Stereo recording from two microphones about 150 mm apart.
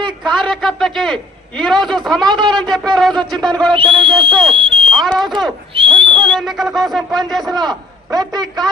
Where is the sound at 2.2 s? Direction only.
30° right (ahead or behind).